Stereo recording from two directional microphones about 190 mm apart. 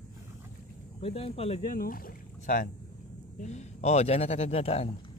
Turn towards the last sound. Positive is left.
turn(degrees=30)  # may be behind; listen again after turning